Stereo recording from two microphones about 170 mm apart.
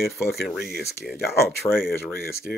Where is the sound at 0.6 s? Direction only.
65° left (ahead or behind).